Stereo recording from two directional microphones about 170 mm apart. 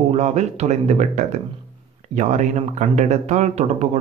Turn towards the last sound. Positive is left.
turn(degrees=-40)  # may be behind; listen again after turning